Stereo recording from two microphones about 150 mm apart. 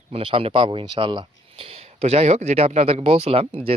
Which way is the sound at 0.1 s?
35° right (ahead or behind).